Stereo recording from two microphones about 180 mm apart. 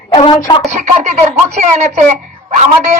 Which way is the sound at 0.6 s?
40° right (ahead or behind).